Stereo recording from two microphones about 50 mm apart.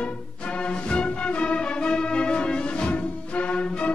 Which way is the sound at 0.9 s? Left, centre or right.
Centre.